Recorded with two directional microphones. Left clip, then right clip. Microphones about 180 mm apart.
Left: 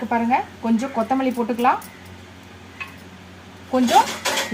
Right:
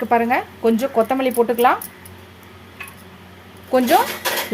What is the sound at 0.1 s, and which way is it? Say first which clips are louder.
Speech: right 2 dB; 70° right (ahead or behind).